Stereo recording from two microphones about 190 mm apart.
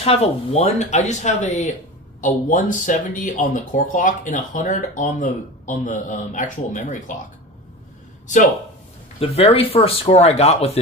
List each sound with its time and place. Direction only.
0.0 s speech: 30° left (ahead or behind)
9.2 s speech: 30° left (ahead or behind)